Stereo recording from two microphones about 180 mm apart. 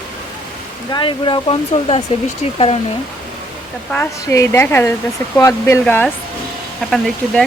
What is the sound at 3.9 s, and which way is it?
A woman's voice, 15° left (ahead or behind).